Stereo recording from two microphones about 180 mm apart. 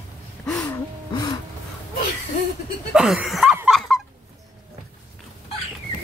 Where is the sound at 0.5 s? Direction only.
5° left (ahead or behind).